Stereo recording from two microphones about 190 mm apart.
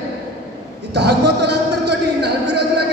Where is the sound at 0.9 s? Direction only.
60° right (ahead or behind).